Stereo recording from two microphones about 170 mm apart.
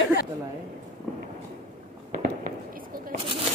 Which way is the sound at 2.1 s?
55° right (ahead or behind).